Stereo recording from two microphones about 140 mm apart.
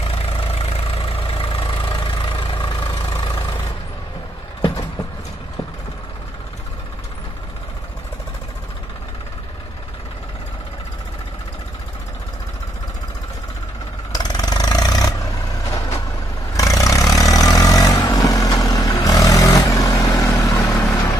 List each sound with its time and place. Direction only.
0.0 s vehicle: 40° left (ahead or behind)
4.6 s vehicle: 30° left (ahead or behind)
14.1 s vehicle: 30° left (ahead or behind)
16.5 s vehicle: 25° left (ahead or behind)